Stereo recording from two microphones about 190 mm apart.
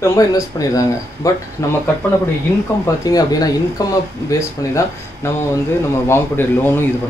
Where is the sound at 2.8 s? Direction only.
20° left (ahead or behind).